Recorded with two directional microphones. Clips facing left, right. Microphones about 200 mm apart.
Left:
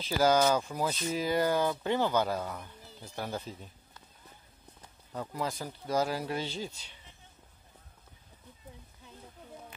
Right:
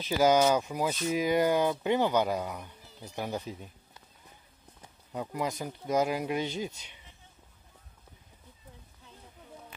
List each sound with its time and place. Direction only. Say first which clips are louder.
0.0 s speech: right 2 dB; 15° right (ahead or behind)
5.1 s speech: right 2 dB; 15° right (ahead or behind)